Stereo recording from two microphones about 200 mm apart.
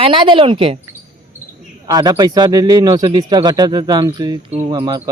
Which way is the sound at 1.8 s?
20° right (ahead or behind).